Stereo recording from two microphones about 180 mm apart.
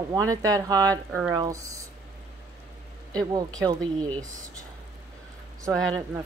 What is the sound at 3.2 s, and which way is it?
Speech, 20° right (ahead or behind).